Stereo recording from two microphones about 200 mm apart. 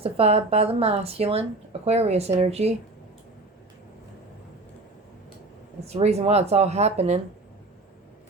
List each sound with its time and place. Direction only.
0.0 s speech: 30° right (ahead or behind)
5.8 s speech: 30° right (ahead or behind)